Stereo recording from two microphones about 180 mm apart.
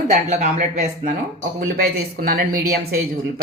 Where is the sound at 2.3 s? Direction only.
60° right (ahead or behind).